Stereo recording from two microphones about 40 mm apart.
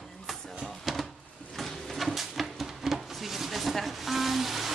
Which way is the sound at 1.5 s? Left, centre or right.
Centre.